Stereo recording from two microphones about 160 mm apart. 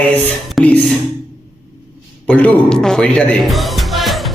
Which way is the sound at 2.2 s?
10° left (ahead or behind).